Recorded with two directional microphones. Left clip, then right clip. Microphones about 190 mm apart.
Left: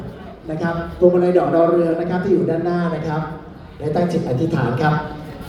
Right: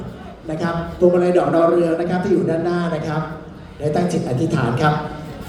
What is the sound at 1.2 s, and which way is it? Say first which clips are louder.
A man's voice: even; 50° right (ahead or behind).